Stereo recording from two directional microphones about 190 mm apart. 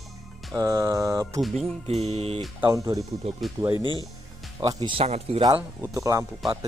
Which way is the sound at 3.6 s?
15° right (ahead or behind).